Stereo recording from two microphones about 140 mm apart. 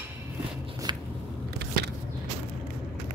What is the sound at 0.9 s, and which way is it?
Biting, 30° right (ahead or behind).